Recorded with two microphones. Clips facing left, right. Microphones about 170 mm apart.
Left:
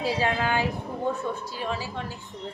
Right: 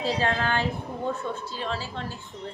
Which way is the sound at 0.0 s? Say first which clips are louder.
Even; 10° left (ahead or behind).